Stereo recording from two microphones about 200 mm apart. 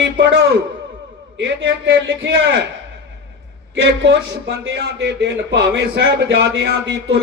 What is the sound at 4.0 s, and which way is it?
Speech, 65° right (ahead or behind).